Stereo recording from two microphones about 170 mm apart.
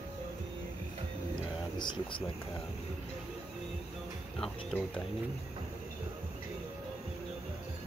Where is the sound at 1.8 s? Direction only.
30° left (ahead or behind).